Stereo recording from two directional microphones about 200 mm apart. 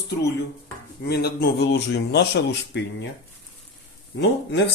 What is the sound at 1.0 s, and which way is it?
Speech, 50° left (ahead or behind).